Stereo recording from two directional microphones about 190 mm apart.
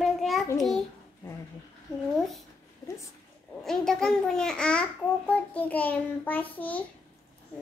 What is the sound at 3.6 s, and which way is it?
A child's voice, 5° left (ahead or behind).